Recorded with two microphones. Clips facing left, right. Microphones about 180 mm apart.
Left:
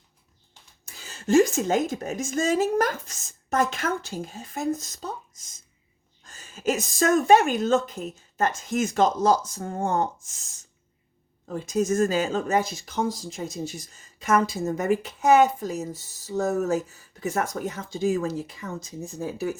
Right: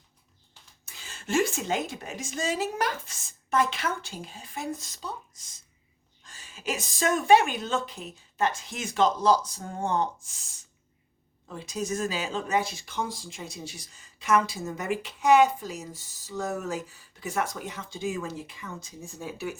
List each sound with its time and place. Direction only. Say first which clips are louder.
1.0 s speech: left 7 dB; 40° left (ahead or behind)
6.2 s speech: left 7 dB; 45° left (ahead or behind)
11.4 s speech: left 8 dB; 45° left (ahead or behind)